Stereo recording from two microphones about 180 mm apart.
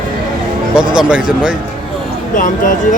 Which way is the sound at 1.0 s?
5° right (ahead or behind).